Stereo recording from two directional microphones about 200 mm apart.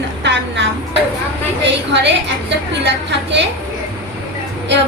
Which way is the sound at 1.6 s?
60° right (ahead or behind).